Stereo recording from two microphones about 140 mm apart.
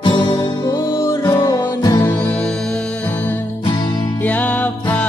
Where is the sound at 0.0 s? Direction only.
35° left (ahead or behind).